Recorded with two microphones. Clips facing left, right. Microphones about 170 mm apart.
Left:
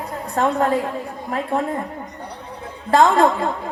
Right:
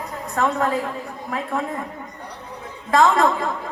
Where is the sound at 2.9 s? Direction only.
30° left (ahead or behind).